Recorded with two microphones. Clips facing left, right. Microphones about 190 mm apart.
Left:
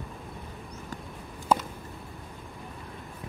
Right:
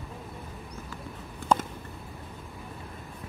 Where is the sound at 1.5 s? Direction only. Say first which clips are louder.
Even; 5° left (ahead or behind).